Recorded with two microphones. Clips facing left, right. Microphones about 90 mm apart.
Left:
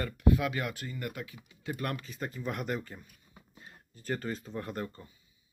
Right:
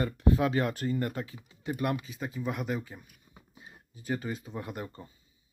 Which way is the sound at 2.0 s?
5° right (ahead or behind).